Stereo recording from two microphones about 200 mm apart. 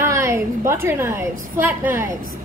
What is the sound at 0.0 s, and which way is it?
A woman's voice, 15° right (ahead or behind).